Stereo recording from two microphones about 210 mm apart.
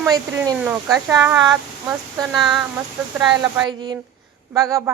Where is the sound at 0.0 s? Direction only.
15° right (ahead or behind).